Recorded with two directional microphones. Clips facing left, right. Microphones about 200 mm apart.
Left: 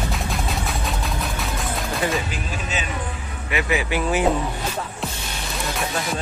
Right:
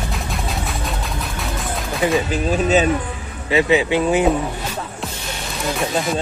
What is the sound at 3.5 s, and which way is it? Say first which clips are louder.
Speech: right 7 dB; 25° right (ahead or behind).